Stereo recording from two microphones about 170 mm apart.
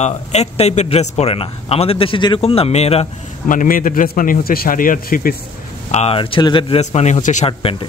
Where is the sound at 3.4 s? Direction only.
50° left (ahead or behind).